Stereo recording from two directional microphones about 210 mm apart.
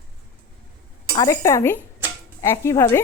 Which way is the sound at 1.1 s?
15° left (ahead or behind).